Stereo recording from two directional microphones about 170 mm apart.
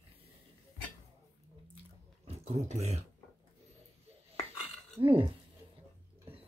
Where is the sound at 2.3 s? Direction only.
40° right (ahead or behind).